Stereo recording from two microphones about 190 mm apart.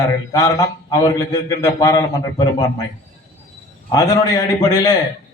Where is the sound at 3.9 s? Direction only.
20° left (ahead or behind).